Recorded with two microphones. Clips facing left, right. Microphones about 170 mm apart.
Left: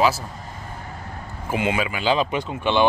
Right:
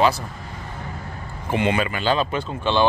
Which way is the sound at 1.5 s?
5° left (ahead or behind).